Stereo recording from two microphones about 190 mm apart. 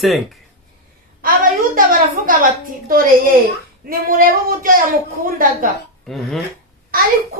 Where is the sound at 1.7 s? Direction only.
45° right (ahead or behind).